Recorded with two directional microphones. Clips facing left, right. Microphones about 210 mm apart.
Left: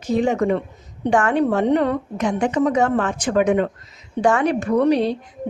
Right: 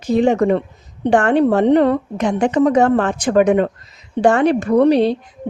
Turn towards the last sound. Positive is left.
turn(degrees=-30)  # may be behind; listen again after turning